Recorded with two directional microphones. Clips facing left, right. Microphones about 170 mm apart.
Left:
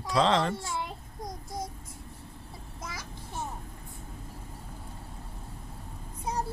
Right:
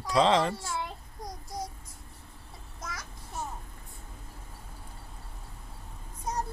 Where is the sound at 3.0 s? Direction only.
25° left (ahead or behind).